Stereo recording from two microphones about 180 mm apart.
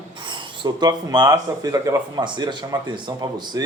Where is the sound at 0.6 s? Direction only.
25° right (ahead or behind).